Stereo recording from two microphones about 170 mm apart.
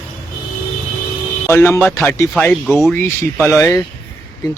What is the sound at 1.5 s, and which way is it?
Speech, 15° left (ahead or behind).